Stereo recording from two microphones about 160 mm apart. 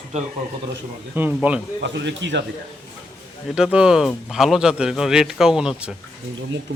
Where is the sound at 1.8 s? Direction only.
90° right.